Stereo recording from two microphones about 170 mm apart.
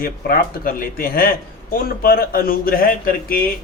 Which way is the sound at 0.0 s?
60° left (ahead or behind).